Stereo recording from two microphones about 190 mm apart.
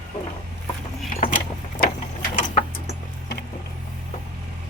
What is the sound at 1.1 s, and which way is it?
Vehicle, 45° left (ahead or behind).